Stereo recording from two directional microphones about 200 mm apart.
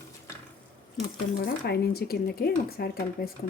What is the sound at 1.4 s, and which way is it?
Speech, 55° left (ahead or behind).